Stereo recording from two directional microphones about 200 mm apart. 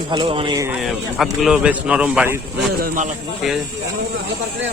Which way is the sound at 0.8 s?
Centre (ahead or behind).